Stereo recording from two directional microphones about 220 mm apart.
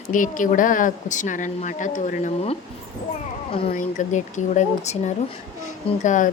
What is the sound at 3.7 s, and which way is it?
A woman's voice, 35° left (ahead or behind).